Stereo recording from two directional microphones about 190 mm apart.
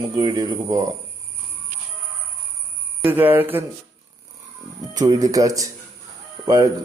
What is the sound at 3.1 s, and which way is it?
Speech, 10° right (ahead or behind).